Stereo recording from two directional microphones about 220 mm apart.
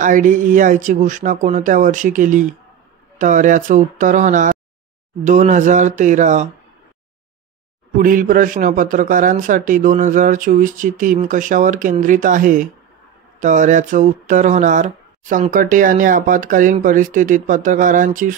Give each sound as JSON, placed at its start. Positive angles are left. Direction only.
{"t": 0.0, "sound": "speech", "side_deg": -35}
{"t": 8.0, "sound": "speech", "side_deg": -40}